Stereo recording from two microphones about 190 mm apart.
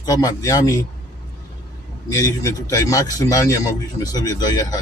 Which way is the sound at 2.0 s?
20° left (ahead or behind).